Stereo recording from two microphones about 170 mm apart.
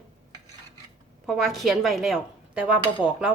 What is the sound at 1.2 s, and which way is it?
Speech, centre (ahead or behind).